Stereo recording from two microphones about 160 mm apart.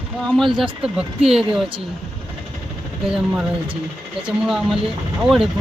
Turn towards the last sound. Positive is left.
turn(degrees=-5)  # may be behind; listen again after turning